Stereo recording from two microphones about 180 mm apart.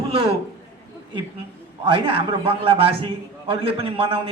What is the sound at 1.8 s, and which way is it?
A man's voice, 30° right (ahead or behind).